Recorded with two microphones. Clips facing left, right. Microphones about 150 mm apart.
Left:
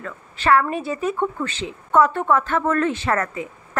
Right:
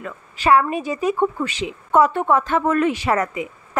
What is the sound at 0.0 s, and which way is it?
Speech, 15° right (ahead or behind).